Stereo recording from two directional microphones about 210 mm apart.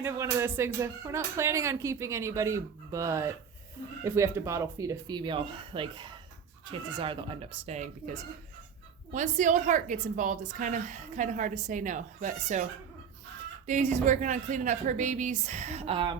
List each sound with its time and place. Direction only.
0.0 s a woman's voice: 15° right (ahead or behind); by 12.6 s 35° right (ahead or behind)
13.7 s a woman's voice: 35° right (ahead or behind)